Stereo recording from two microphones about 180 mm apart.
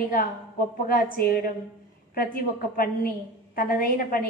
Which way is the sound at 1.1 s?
55° left (ahead or behind).